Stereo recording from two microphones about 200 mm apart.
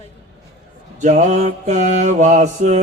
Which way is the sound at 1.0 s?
35° right (ahead or behind).